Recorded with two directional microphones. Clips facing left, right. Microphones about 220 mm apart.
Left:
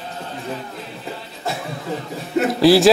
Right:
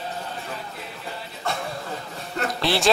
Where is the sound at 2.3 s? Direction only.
5° left (ahead or behind).